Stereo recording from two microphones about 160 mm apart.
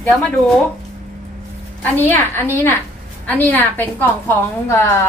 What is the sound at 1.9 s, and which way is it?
A woman's voice, 15° left (ahead or behind).